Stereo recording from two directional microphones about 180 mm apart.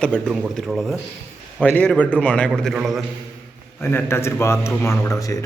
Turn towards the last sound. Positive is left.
turn(degrees=20)  # may be behind; listen again after turning